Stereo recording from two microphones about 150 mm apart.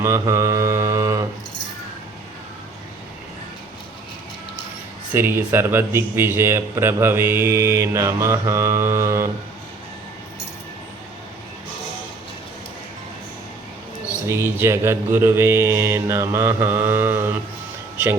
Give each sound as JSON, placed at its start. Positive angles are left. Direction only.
{"t": 0.0, "sound": "mantra", "side_deg": -20}
{"t": 5.1, "sound": "speech", "side_deg": -15}
{"t": 14.3, "sound": "speech", "side_deg": -15}
{"t": 17.9, "sound": "a sound", "side_deg": -15}